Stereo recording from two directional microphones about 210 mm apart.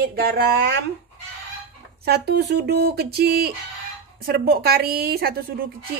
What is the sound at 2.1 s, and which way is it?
A woman's voice, 50° right (ahead or behind).